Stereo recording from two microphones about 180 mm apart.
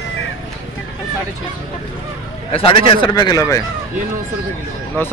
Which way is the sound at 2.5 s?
30° left (ahead or behind).